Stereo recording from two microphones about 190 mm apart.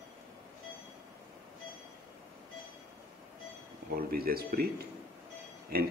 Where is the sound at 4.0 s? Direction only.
50° right (ahead or behind).